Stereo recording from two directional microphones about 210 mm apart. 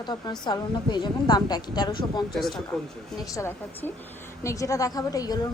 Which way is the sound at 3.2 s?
15° left (ahead or behind).